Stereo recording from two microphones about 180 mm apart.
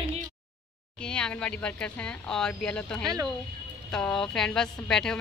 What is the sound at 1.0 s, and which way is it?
Speech, 5° left (ahead or behind).